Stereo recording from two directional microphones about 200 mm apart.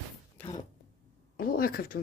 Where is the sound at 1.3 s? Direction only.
45° left (ahead or behind).